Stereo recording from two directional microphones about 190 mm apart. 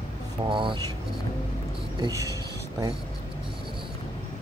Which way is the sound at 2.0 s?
15° right (ahead or behind).